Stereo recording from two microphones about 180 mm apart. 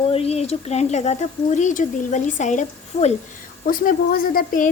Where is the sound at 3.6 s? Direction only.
50° left (ahead or behind).